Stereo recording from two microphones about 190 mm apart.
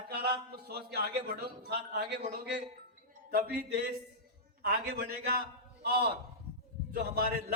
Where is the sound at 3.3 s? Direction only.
50° right (ahead or behind).